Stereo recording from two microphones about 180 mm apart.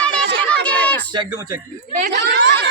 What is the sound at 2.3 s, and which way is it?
Speech, 70° right (ahead or behind).